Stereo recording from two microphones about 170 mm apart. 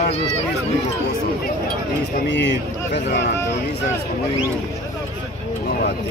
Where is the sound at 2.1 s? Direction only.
85° left.